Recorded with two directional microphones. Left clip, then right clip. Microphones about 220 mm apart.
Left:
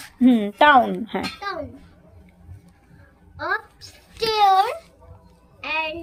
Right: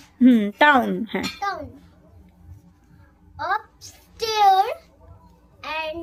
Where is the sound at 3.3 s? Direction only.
20° right (ahead or behind).